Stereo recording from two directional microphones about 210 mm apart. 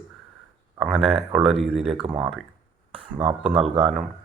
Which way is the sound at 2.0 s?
25° right (ahead or behind).